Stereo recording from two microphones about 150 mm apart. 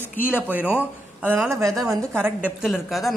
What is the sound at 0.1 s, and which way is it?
Speech, 15° left (ahead or behind).